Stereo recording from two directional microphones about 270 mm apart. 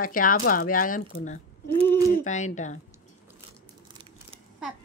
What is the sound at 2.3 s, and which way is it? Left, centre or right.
Speech, left.